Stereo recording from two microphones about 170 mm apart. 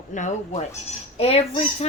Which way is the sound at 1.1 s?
35° left (ahead or behind).